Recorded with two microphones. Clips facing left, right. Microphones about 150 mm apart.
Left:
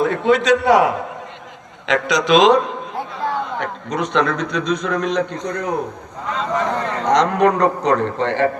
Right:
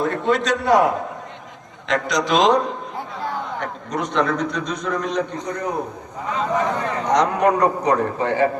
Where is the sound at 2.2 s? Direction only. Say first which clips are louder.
Left 5 dB; 80° left.